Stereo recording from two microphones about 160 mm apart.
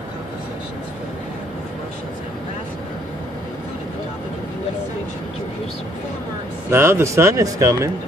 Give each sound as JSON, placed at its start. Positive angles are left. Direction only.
{"t": 6.7, "sound": "speech", "side_deg": -15}